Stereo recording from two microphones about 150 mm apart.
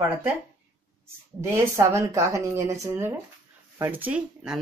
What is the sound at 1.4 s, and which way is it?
A woman's voice, 20° right (ahead or behind).